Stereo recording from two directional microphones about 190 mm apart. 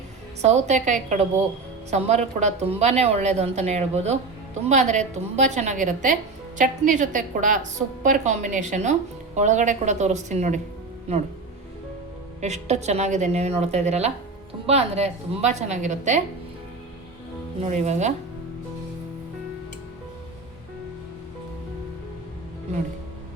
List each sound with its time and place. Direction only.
0.4 s a woman's voice: 35° right (ahead or behind)
12.4 s a woman's voice: 35° right (ahead or behind)
17.6 s a woman's voice: 35° right (ahead or behind)